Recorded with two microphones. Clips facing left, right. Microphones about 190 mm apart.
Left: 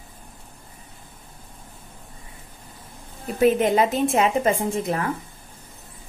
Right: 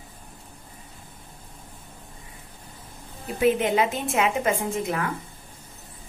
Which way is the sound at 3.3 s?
40° left (ahead or behind).